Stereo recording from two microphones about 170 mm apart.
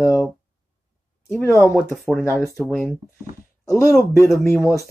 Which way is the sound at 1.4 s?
15° left (ahead or behind).